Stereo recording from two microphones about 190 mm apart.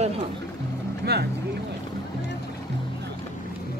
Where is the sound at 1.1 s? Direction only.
55° right (ahead or behind).